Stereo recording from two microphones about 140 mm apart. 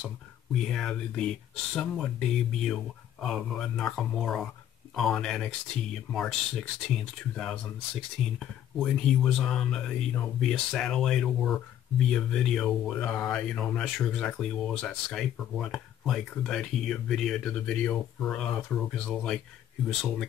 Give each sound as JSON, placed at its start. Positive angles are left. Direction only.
{"t": 0.5, "sound": "speech", "side_deg": 0}